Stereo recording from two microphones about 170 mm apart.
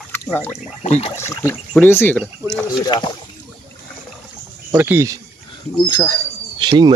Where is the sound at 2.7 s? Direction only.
25° left (ahead or behind).